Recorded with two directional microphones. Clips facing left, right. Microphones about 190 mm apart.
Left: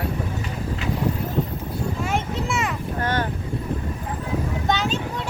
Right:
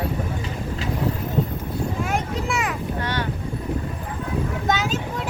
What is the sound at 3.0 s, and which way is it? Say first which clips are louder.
Boat: left 5 dB; 50° left (ahead or behind).